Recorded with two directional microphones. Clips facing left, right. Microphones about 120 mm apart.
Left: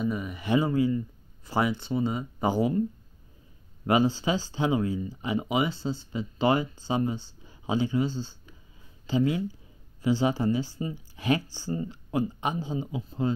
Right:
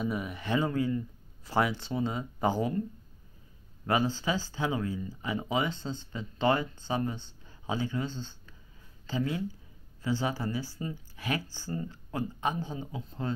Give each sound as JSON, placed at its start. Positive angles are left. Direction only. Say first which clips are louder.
{"t": 0.0, "sound": "speech", "louder": "left 3 dB", "side_deg": 0}
{"t": 0.4, "sound": "speech", "louder": "left 6 dB", "side_deg": 10}
{"t": 3.8, "sound": "speech", "louder": "left 5 dB", "side_deg": 15}